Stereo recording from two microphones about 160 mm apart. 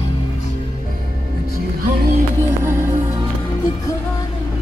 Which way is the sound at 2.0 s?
60° right (ahead or behind).